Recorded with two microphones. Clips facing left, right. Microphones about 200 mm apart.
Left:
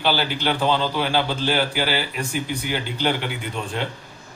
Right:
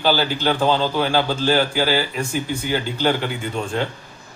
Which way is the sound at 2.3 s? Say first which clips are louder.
Right 2 dB; 15° left (ahead or behind).